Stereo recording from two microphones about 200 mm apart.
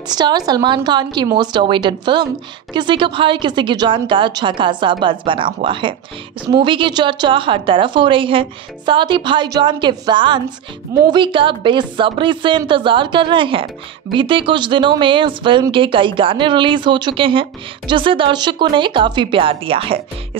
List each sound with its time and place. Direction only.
0.1 s speech: 20° right (ahead or behind)